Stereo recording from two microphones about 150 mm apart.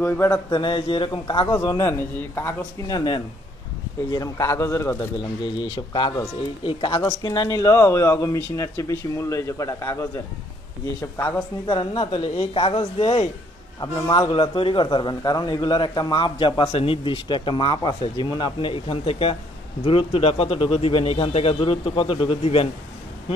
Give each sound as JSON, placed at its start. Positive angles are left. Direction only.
{"t": 0.0, "sound": "mantra", "side_deg": 15}
{"t": 0.5, "sound": "a man's voice", "side_deg": 30}
{"t": 2.9, "sound": "a man's voice", "side_deg": 30}
{"t": 5.6, "sound": "a man's voice", "side_deg": 30}
{"t": 11.6, "sound": "a man's voice", "side_deg": 30}
{"t": 13.7, "sound": "a man's voice", "side_deg": 25}